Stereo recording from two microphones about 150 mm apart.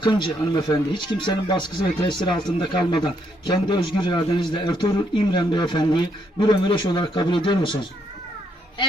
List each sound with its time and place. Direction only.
0.0 s speech: 30° left (ahead or behind)